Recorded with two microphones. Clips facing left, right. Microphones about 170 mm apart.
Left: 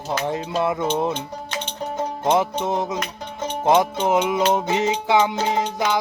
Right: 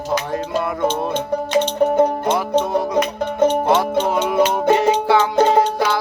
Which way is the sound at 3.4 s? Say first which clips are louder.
Right 6 dB; 60° right (ahead or behind).